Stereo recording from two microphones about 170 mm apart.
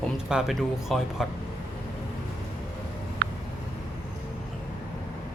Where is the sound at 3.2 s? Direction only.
85° right.